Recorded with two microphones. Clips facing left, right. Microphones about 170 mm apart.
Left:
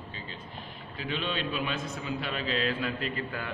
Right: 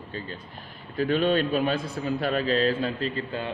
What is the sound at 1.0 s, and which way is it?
A man's voice, 45° right (ahead or behind).